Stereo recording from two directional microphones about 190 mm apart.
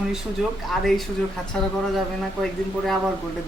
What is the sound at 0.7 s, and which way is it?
Speech, centre (ahead or behind).